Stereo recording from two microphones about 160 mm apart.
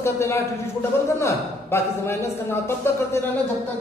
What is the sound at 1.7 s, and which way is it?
A man's voice, 15° left (ahead or behind).